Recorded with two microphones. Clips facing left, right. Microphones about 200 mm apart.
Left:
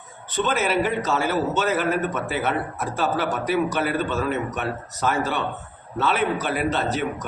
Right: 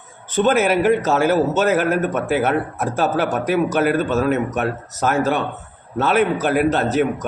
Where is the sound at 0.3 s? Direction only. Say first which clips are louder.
Right 7 dB; 50° right (ahead or behind).